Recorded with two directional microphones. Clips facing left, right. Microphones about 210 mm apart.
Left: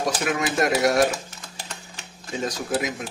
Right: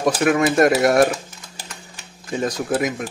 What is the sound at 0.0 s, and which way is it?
Speech, 55° right (ahead or behind).